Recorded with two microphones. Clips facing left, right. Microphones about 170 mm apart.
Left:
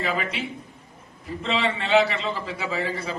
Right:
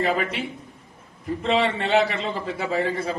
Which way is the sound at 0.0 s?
50° right (ahead or behind).